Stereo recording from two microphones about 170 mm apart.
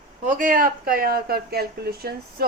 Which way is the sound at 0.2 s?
50° right (ahead or behind).